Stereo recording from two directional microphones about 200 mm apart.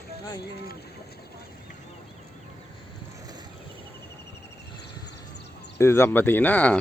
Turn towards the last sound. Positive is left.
turn(degrees=10)  # may be behind; listen again after turning